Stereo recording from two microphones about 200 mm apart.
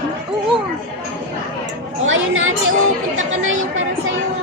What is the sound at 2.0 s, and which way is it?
Chatter, 75° right (ahead or behind).